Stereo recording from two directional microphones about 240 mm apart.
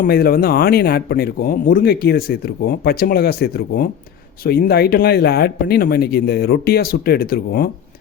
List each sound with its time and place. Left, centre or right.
0.0 s speech: left